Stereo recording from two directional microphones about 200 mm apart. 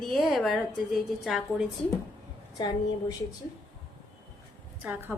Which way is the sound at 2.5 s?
20° left (ahead or behind).